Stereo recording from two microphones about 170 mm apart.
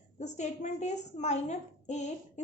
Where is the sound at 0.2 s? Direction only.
45° left (ahead or behind).